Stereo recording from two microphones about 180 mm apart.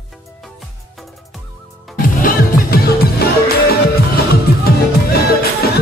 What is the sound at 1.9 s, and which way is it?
Music, 50° left (ahead or behind).